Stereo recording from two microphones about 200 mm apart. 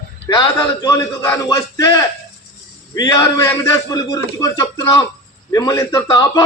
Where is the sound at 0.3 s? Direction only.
20° left (ahead or behind).